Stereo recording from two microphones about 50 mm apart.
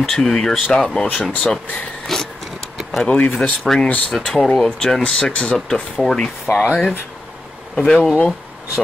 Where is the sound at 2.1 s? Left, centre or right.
Centre.